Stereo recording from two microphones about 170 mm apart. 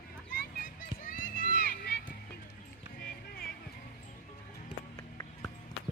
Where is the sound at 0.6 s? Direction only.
50° left (ahead or behind).